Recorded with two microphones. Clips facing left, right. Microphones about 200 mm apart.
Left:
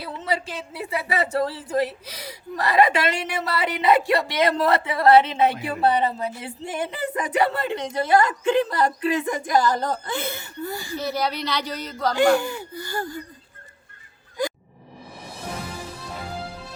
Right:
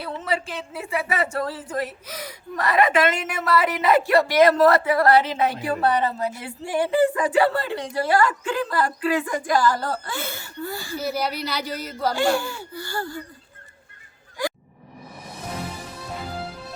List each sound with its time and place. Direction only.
0.0 s a sound: 30° left (ahead or behind)
0.9 s speech: 30° left (ahead or behind)
11.0 s speech: 5° right (ahead or behind)
12.1 s speech: 20° left (ahead or behind)